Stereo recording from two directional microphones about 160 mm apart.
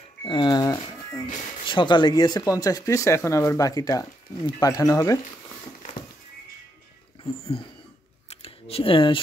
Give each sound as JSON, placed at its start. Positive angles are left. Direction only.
{"t": 0.2, "sound": "music", "side_deg": 30}
{"t": 1.7, "sound": "speech", "side_deg": 30}
{"t": 8.3, "sound": "a sound", "side_deg": 40}